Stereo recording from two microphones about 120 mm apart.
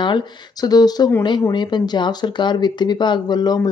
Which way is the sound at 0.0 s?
35° left (ahead or behind).